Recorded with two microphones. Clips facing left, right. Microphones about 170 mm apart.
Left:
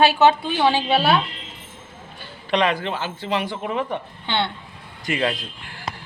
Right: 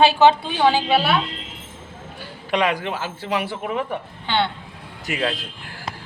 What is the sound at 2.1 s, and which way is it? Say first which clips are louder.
A woman's voice: left 1 dB; 10° right (ahead or behind).